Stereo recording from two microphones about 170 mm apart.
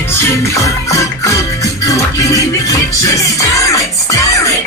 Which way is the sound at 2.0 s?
20° left (ahead or behind).